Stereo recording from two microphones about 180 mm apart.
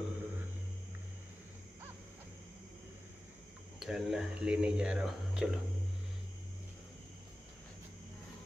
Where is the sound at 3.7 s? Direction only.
Centre (ahead or behind).